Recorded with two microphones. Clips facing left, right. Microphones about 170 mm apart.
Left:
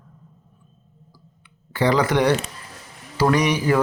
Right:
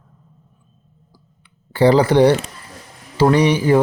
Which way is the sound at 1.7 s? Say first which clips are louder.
Right 6 dB; 30° right (ahead or behind).